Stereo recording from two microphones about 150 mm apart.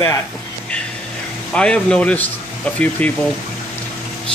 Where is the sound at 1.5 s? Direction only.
5° left (ahead or behind).